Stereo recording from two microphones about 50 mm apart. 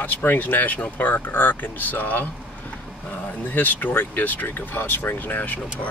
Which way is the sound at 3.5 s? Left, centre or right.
Left.